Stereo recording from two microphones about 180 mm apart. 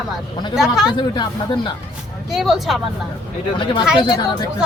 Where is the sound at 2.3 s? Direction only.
Centre (ahead or behind).